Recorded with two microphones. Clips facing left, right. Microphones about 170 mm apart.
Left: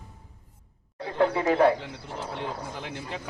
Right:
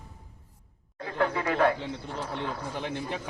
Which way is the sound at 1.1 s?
25° left (ahead or behind).